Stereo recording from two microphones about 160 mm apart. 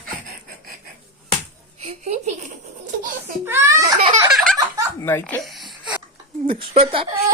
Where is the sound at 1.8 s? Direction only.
45° right (ahead or behind).